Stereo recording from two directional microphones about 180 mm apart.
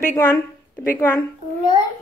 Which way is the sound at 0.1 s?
15° left (ahead or behind).